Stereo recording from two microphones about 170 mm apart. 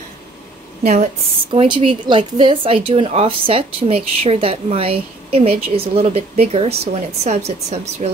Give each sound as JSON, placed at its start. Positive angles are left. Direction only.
{"t": 0.8, "sound": "speech", "side_deg": -40}
{"t": 1.5, "sound": "speech", "side_deg": -30}